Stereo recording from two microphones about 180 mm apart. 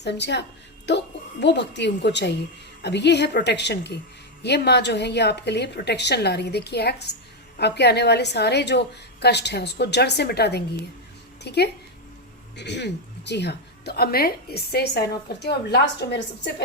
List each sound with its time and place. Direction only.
0.0 s a woman's voice: 70° left (ahead or behind)